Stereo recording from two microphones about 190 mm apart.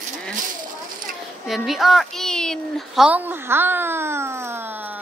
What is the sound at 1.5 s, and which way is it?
A woman's voice, centre (ahead or behind).